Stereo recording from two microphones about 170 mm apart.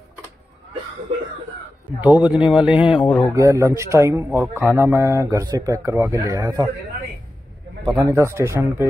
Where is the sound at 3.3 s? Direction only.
20° right (ahead or behind).